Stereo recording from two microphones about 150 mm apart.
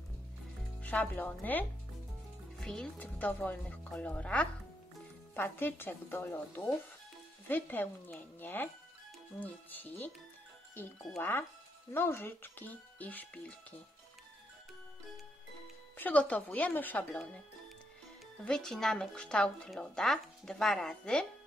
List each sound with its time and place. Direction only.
0.8 s speech: 10° left (ahead or behind)
11.1 s speech: 15° left (ahead or behind)
16.0 s speech: 10° left (ahead or behind)
18.4 s speech: 5° left (ahead or behind)